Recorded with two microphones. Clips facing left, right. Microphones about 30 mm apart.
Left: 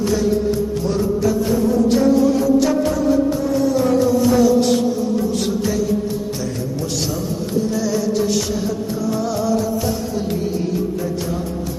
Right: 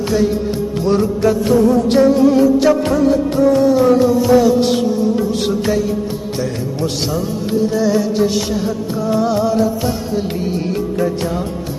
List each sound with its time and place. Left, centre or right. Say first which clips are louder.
0.7 s music: right 5 dB; right
1.2 s music: right 6 dB; right
2.7 s music: right 3 dB; right
3.7 s music: right 4 dB; right
6.8 s music: right 5 dB; right
7.7 s music: right 4 dB; right
10.7 s music: right 4 dB; right